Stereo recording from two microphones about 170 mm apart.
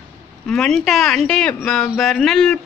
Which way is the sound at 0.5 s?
Centre (ahead or behind).